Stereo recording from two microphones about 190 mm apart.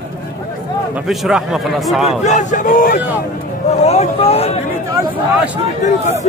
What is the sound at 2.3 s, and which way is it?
Speech, 40° left (ahead or behind).